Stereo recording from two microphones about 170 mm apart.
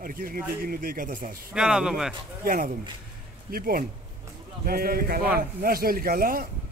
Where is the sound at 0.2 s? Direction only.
60° right (ahead or behind).